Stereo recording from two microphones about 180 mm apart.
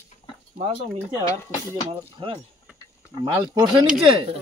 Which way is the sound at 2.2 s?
30° right (ahead or behind).